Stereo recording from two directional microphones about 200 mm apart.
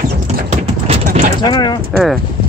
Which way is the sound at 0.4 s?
35° right (ahead or behind).